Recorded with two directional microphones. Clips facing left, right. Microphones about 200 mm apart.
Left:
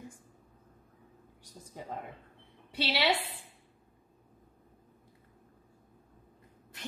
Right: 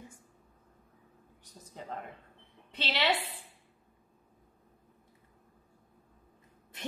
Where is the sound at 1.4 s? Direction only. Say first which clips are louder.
Left 1 dB; 15° left (ahead or behind).